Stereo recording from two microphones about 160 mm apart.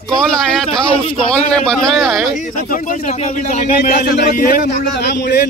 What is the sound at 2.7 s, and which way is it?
A man's voice, 55° left (ahead or behind).